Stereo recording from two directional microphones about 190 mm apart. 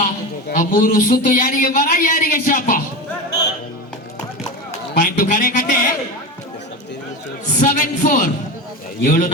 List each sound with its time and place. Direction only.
0.5 s a man's voice: 45° left (ahead or behind)
4.9 s a man's voice: 50° left (ahead or behind)
7.6 s a sound: 45° left (ahead or behind)
9.0 s speech: 40° left (ahead or behind)